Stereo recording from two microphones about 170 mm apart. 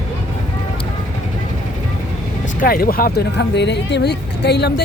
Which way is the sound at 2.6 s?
60° left (ahead or behind).